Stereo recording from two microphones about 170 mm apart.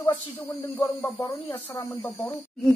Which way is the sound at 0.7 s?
10° left (ahead or behind).